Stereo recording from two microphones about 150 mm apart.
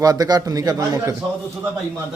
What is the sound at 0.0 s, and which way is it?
A man's voice, 25° right (ahead or behind).